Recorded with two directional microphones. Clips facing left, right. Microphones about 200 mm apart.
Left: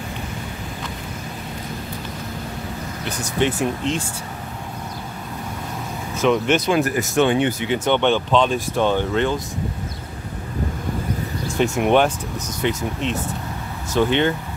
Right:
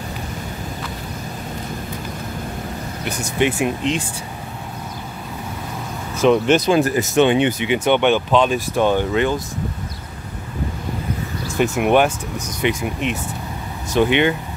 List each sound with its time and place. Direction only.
3.1 s speech: 10° right (ahead or behind)
6.2 s speech: 35° right (ahead or behind); by 9.4 s 10° right (ahead or behind)
11.5 s speech: 5° right (ahead or behind)